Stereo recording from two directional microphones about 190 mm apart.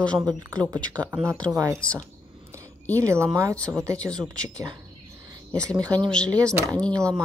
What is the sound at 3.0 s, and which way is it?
Speech, 15° right (ahead or behind).